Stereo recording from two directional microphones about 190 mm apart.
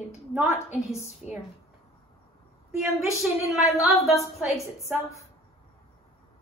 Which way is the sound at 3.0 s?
Centre (ahead or behind).